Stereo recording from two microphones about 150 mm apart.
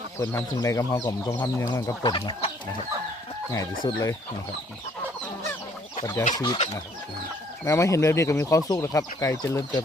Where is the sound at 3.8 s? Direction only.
25° left (ahead or behind).